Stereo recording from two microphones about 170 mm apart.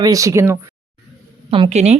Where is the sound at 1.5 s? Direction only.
35° right (ahead or behind).